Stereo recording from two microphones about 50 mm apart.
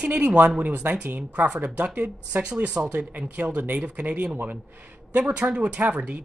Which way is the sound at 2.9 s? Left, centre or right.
Right.